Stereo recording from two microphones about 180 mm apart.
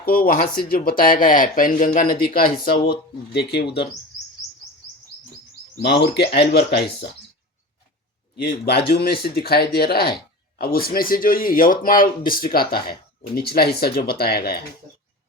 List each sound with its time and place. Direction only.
0.0 s speech: 55° left (ahead or behind)
5.8 s speech: 70° left (ahead or behind)
8.4 s speech: 65° left (ahead or behind)